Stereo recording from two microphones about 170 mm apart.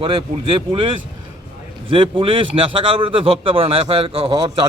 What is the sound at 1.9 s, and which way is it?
A man's voice, 30° right (ahead or behind).